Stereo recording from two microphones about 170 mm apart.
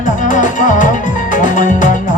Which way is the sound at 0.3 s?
50° left (ahead or behind).